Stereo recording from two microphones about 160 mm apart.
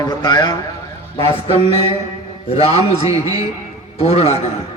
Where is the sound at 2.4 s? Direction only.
40° left (ahead or behind).